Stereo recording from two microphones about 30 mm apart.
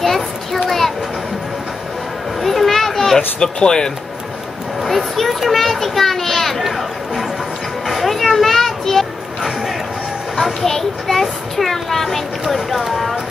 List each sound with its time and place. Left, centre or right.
0.0 s children playing: centre
0.7 s a sound: centre
2.4 s a sound: centre
3.3 s speech: left
4.8 s a child's voice: centre
7.8 s music: centre
10.3 s children playing: centre
10.7 s a child's voice: centre